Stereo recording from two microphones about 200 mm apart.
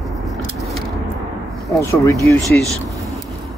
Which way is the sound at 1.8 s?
15° left (ahead or behind).